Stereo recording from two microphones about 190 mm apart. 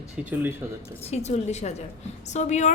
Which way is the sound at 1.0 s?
35° left (ahead or behind).